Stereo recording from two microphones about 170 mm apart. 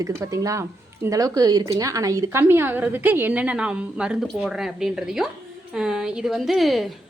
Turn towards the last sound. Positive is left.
turn(degrees=0)  # may be behind; listen again after turning